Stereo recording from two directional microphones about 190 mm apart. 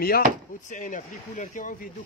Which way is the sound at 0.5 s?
40° left (ahead or behind).